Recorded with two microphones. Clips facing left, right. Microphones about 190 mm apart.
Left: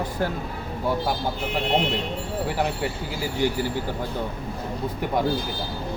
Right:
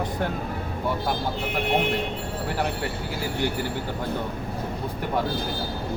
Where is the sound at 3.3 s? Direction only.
55° right (ahead or behind).